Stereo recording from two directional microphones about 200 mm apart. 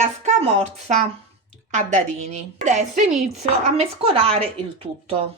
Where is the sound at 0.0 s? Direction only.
35° right (ahead or behind).